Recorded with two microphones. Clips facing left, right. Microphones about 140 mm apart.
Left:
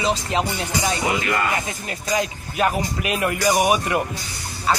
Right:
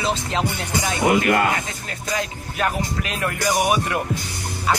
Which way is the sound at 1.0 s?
55° right (ahead or behind).